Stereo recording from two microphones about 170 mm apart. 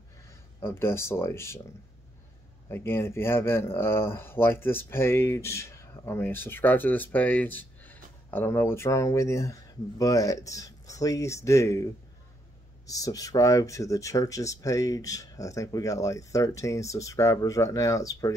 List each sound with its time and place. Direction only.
0.3 s speech: 15° left (ahead or behind)
2.7 s speech: 15° left (ahead or behind)